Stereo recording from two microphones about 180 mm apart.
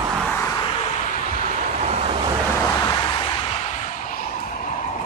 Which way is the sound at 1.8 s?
35° right (ahead or behind).